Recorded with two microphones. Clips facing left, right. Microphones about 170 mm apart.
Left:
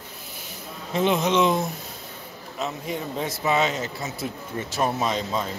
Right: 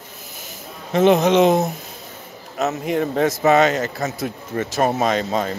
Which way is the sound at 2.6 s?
75° right (ahead or behind).